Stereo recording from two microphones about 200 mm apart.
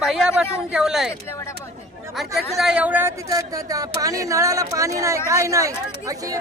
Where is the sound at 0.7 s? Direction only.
Centre (ahead or behind).